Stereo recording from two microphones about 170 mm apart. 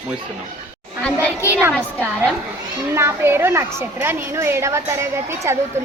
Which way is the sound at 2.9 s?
15° right (ahead or behind).